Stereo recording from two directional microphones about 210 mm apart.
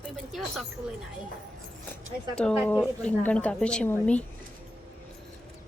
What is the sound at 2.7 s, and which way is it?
Speech, 10° left (ahead or behind).